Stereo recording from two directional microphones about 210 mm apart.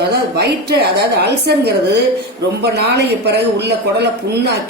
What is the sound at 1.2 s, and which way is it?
Speech, 50° right (ahead or behind).